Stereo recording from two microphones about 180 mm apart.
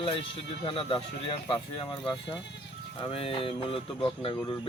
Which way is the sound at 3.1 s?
30° left (ahead or behind).